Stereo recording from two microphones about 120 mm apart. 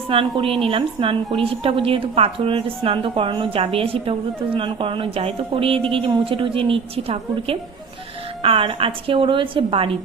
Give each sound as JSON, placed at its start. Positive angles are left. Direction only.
{"t": 0.1, "sound": "a woman's voice", "side_deg": -50}